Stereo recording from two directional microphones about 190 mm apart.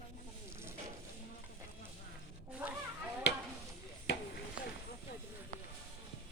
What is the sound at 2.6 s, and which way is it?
Speech, 5° right (ahead or behind).